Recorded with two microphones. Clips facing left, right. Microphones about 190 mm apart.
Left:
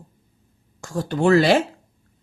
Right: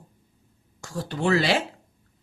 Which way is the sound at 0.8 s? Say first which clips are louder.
Left 6 dB; 50° left (ahead or behind).